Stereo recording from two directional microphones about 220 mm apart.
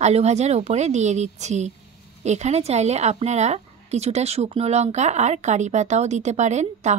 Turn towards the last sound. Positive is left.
turn(degrees=-30)  # may be behind; listen again after turning